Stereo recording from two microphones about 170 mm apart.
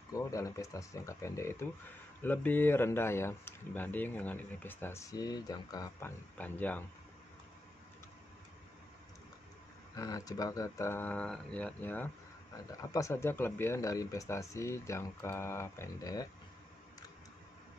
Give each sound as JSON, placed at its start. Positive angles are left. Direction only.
{"t": 0.1, "sound": "speech", "side_deg": 20}
{"t": 5.9, "sound": "speech", "side_deg": 10}
{"t": 9.9, "sound": "speech", "side_deg": 20}